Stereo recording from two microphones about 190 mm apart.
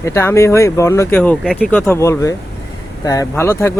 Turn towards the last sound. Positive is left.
turn(degrees=15)  # may be behind; listen again after turning